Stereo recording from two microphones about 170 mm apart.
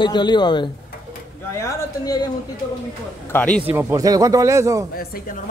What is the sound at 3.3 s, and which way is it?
Speech, 10° left (ahead or behind).